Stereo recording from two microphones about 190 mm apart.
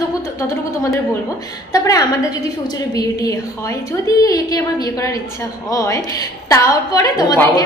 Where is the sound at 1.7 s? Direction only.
20° left (ahead or behind).